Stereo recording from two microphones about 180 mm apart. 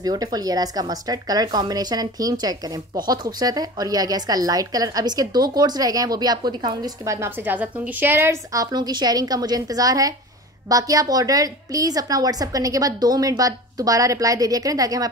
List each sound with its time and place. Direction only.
0.0 s a woman's voice: 20° right (ahead or behind)